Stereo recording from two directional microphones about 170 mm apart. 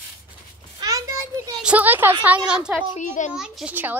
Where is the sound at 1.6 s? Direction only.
10° right (ahead or behind).